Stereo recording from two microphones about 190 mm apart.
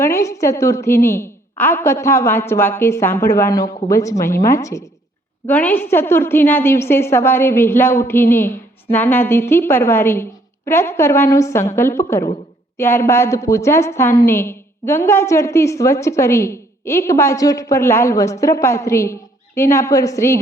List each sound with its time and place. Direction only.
0.0 s a woman's voice: 15° left (ahead or behind)